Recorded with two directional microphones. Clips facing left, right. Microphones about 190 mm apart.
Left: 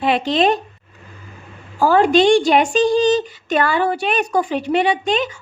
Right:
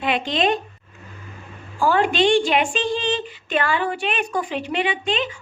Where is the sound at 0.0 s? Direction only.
35° left (ahead or behind).